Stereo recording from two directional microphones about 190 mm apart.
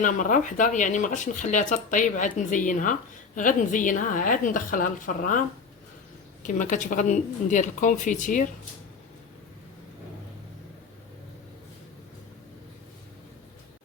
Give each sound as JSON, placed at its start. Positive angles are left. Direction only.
{"t": 0.0, "sound": "speech", "side_deg": 45}
{"t": 6.4, "sound": "speech", "side_deg": 40}